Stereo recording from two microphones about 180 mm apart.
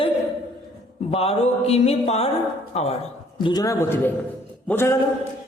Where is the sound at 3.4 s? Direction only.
25° left (ahead or behind).